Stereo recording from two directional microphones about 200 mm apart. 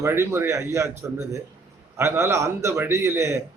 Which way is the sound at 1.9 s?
15° right (ahead or behind).